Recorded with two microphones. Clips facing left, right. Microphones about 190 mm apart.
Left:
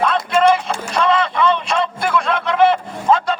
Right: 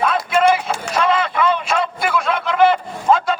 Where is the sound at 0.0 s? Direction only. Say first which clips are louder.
Left 1 dB; 5° right (ahead or behind).